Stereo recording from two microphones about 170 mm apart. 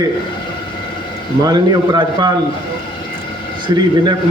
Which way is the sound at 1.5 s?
25° right (ahead or behind).